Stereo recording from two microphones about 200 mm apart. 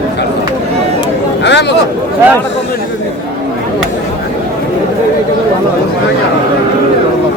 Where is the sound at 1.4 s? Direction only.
60° left (ahead or behind).